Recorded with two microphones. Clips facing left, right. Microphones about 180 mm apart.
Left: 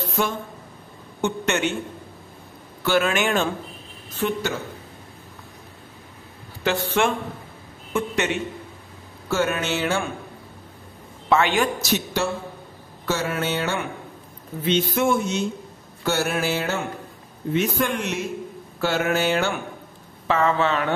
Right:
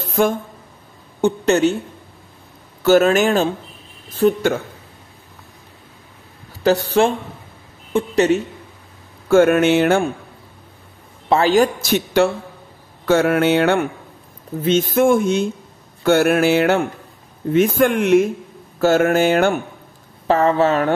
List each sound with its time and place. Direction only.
0.1 s speech: 50° right (ahead or behind)
1.2 s speech: 35° right (ahead or behind)
2.8 s speech: 40° right (ahead or behind)
6.6 s speech: 35° right (ahead or behind)
9.3 s a sound: 55° right (ahead or behind)
11.2 s speech: 35° right (ahead or behind)
11.8 s a sound: 60° right (ahead or behind)
14.6 s speech: 45° right (ahead or behind)
16.0 s a sound: 55° right (ahead or behind)
17.5 s speech: 50° right (ahead or behind)
20.2 s speech: 40° right (ahead or behind)